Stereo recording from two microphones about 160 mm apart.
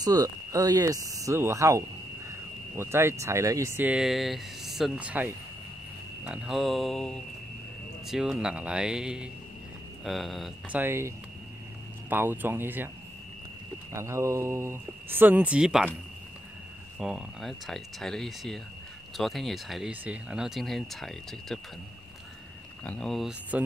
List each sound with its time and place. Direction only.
0.0 s speech: 20° right (ahead or behind); by 10.8 s centre (ahead or behind)
10.8 s speech: 15° right (ahead or behind)
13.9 s speech: 15° right (ahead or behind)
17.0 s speech: 5° right (ahead or behind)
22.8 s speech: 5° left (ahead or behind)